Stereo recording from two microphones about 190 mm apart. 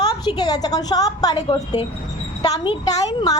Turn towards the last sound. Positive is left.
turn(degrees=20)  # may be behind; listen again after turning